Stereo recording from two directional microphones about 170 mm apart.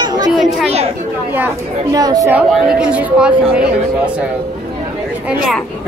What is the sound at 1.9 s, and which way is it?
Speech, 20° right (ahead or behind).